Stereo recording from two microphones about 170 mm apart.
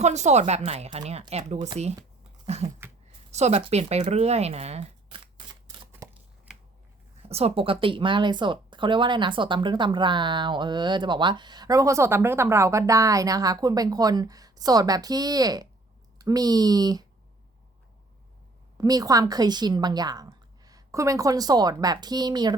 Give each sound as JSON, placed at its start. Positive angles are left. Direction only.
{"t": 0.0, "sound": "speech", "side_deg": -40}
{"t": 5.9, "sound": "a sound", "side_deg": -10}
{"t": 7.2, "sound": "speech", "side_deg": -35}
{"t": 18.8, "sound": "speech", "side_deg": -20}